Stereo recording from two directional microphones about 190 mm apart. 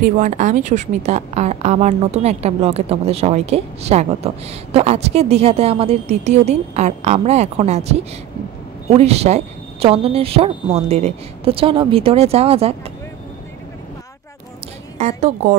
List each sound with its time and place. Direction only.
0.0 s a woman's voice: 40° right (ahead or behind)
15.0 s a woman's voice: 35° right (ahead or behind)